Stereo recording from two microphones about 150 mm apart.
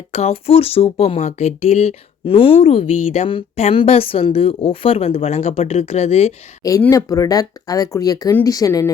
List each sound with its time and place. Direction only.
0.1 s a woman's voice: 45° left (ahead or behind)
6.6 s speech: 25° left (ahead or behind)